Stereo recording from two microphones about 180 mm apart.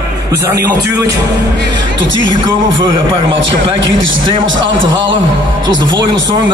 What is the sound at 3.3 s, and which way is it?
A man's voice, 90° right.